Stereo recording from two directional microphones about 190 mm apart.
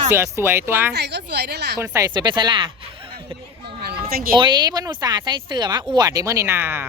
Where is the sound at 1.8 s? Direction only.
15° right (ahead or behind).